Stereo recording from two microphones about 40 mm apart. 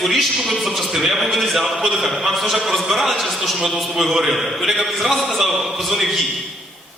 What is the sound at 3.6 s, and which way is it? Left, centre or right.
A man's voice, centre.